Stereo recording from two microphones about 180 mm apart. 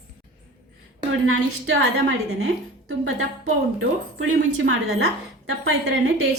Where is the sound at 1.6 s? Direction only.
80° right.